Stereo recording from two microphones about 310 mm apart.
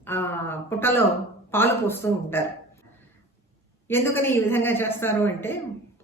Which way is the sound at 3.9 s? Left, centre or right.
Centre.